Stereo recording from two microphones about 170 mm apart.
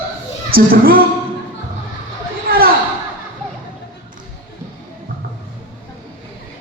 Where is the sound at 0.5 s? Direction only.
60° right (ahead or behind).